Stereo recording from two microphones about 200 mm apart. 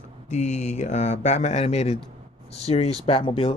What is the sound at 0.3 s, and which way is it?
Speech, 35° left (ahead or behind).